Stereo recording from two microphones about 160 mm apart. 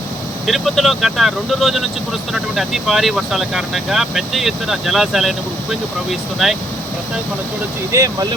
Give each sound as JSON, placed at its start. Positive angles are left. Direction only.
{"t": 0.4, "sound": "speech", "side_deg": 0}
{"t": 7.9, "sound": "speech", "side_deg": -20}